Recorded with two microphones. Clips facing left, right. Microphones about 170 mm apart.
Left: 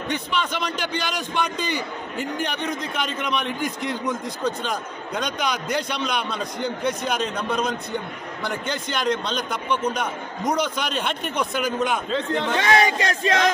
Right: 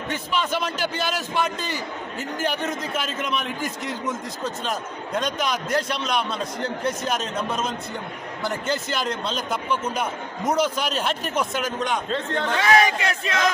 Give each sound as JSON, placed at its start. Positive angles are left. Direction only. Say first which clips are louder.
{"t": 0.1, "sound": "a man's voice", "louder": "right 1 dB", "side_deg": -5}
{"t": 12.4, "sound": "speech", "louder": "right 1 dB", "side_deg": 30}